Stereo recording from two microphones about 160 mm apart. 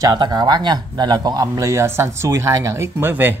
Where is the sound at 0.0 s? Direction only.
25° right (ahead or behind).